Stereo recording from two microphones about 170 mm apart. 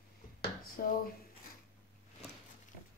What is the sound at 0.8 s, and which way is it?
Speech, 60° left (ahead or behind).